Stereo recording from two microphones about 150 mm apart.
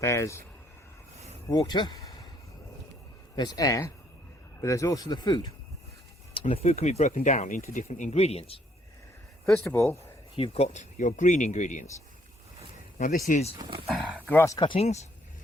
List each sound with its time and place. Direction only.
0.0 s speech: 20° left (ahead or behind)
1.5 s speech: 25° left (ahead or behind)
3.3 s speech: 25° left (ahead or behind)
6.5 s speech: 45° left (ahead or behind)
9.6 s speech: 15° left (ahead or behind)
10.3 s speech: 40° left (ahead or behind); by 11.9 s 55° left (ahead or behind)
13.0 s speech: 60° left (ahead or behind)
13.6 s speech: 30° right (ahead or behind)
13.8 s speech: centre (ahead or behind)
14.3 s speech: 20° left (ahead or behind)
14.7 s speech: 45° left (ahead or behind)